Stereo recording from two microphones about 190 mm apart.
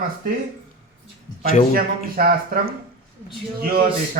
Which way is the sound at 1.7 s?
50° right (ahead or behind).